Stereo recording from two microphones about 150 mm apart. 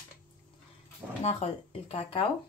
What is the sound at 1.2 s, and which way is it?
Speech, 45° left (ahead or behind).